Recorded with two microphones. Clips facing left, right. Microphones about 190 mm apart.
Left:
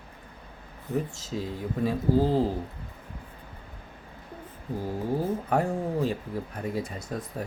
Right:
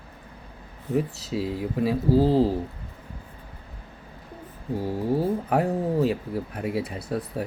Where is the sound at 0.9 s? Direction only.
10° right (ahead or behind).